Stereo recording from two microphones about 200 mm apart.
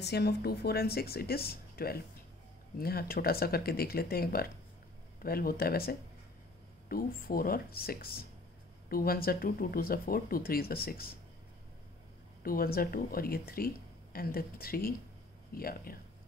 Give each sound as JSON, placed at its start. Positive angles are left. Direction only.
{"t": 0.0, "sound": "speech", "side_deg": 55}
{"t": 12.4, "sound": "speech", "side_deg": 45}